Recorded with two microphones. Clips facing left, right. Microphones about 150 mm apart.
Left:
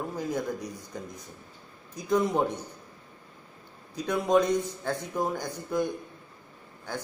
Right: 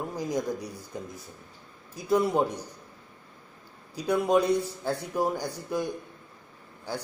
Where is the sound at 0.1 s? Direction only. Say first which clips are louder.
Right 1 dB; 15° right (ahead or behind).